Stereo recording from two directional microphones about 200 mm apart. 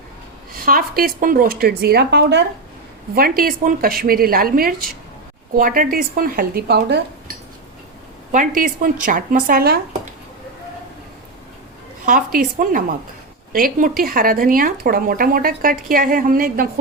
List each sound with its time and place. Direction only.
0.6 s speech: 45° right (ahead or behind)
3.2 s speech: 45° right (ahead or behind)
8.3 s speech: 40° right (ahead or behind)
12.0 s speech: 45° right (ahead or behind)